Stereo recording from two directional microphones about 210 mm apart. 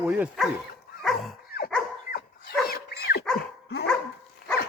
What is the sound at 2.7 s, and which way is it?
Dog, 50° left (ahead or behind).